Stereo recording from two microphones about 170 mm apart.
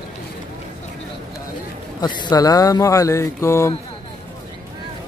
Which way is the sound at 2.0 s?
25° left (ahead or behind).